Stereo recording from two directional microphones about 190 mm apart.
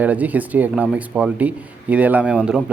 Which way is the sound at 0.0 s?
10° right (ahead or behind).